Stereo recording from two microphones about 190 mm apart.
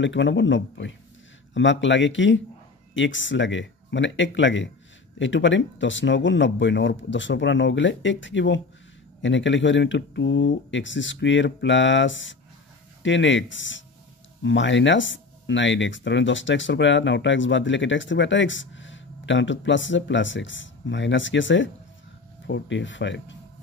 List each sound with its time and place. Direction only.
0.0 s speech: 75° left (ahead or behind)